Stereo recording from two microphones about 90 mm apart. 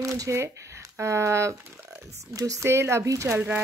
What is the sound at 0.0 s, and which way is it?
Speech, 35° right (ahead or behind).